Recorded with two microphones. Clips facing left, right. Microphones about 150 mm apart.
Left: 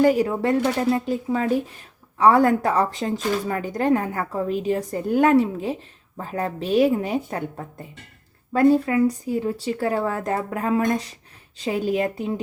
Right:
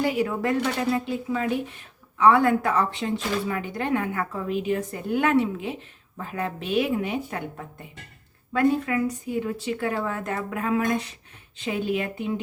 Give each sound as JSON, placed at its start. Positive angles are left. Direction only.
{"t": 0.0, "sound": "a woman's voice", "side_deg": 40}